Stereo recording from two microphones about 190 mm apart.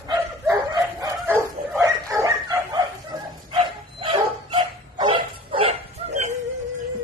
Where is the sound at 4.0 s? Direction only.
25° right (ahead or behind).